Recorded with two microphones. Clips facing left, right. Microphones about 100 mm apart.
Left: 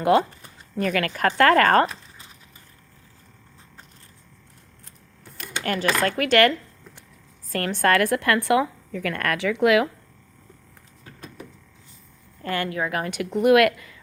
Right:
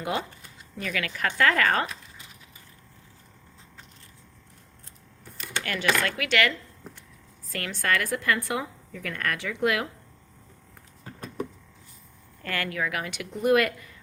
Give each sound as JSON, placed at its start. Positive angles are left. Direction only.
{"t": 0.0, "sound": "a woman's voice", "side_deg": 60}
{"t": 0.8, "sound": "speech", "side_deg": 45}
{"t": 5.6, "sound": "speech", "side_deg": 40}
{"t": 7.5, "sound": "a woman's voice", "side_deg": 45}
{"t": 12.4, "sound": "a woman's voice", "side_deg": 25}
{"t": 13.3, "sound": "speech", "side_deg": 70}